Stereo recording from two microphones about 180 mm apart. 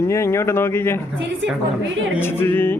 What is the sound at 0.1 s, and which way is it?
Speech, 15° left (ahead or behind).